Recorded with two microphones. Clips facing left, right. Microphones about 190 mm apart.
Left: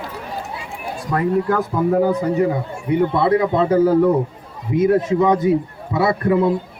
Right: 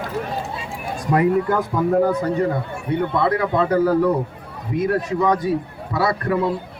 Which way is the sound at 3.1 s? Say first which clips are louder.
Left 3 dB; 25° left (ahead or behind).